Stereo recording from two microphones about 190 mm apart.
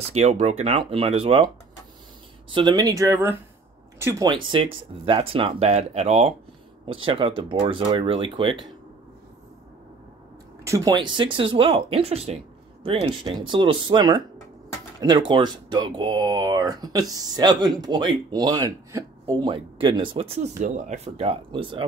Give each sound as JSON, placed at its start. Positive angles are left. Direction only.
{"t": 0.1, "sound": "speech", "side_deg": -35}
{"t": 2.5, "sound": "speech", "side_deg": -20}
{"t": 4.5, "sound": "speech", "side_deg": -30}
{"t": 10.6, "sound": "speech", "side_deg": -15}